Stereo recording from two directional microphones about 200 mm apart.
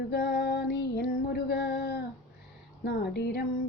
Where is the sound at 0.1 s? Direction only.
55° left (ahead or behind).